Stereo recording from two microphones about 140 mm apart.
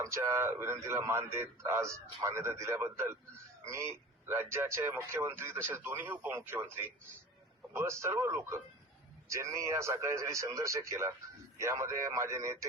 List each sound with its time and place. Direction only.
0.0 s a man's voice: 20° right (ahead or behind)